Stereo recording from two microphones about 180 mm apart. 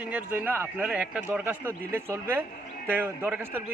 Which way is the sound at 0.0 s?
10° right (ahead or behind).